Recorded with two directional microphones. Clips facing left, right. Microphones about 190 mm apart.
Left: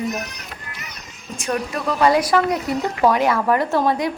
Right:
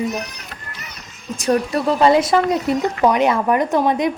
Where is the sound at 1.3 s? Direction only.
35° right (ahead or behind).